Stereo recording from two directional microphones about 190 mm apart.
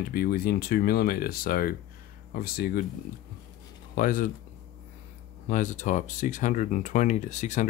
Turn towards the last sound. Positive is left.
turn(degrees=40)  # may be behind; listen again after turning